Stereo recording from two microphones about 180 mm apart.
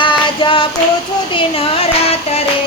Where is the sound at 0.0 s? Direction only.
30° left (ahead or behind).